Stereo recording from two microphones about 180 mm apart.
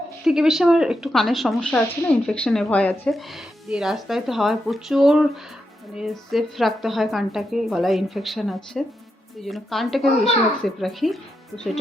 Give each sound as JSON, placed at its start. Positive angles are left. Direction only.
{"t": 0.3, "sound": "speech", "side_deg": 0}